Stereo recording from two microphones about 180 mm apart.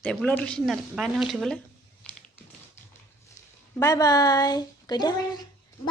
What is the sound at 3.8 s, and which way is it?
A woman's voice, 20° left (ahead or behind).